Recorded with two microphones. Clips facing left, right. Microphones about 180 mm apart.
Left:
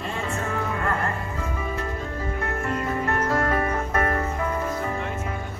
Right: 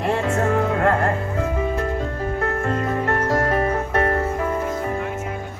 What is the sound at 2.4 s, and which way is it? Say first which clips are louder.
Music: right 5 dB; 50° right (ahead or behind).